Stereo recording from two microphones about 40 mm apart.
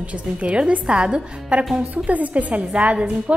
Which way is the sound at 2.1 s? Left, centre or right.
Right.